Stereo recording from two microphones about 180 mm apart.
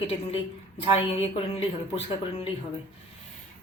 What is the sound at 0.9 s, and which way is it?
Speech, 30° left (ahead or behind).